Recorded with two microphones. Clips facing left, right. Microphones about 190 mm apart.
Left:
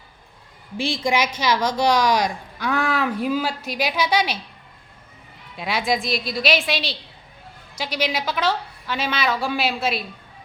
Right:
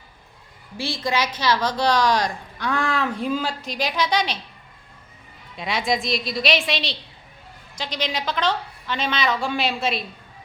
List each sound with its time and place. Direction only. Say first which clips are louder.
0.8 s speech: left 3 dB; 15° left (ahead or behind)
5.5 s a woman's voice: left 1 dB; centre (ahead or behind)